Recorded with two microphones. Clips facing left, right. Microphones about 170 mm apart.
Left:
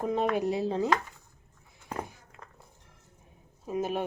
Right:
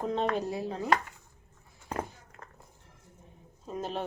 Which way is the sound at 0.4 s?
25° left (ahead or behind).